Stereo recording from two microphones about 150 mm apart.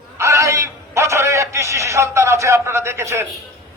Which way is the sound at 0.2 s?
20° right (ahead or behind).